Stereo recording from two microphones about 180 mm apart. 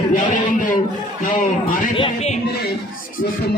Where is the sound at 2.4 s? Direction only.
60° left (ahead or behind).